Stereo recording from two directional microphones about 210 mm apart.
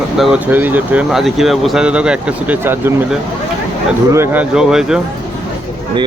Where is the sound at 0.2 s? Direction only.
5° right (ahead or behind).